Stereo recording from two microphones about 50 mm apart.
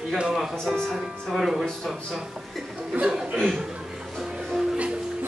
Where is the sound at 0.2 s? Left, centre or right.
Centre.